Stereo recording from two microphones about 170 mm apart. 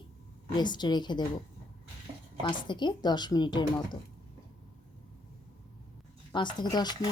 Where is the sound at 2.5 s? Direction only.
25° left (ahead or behind).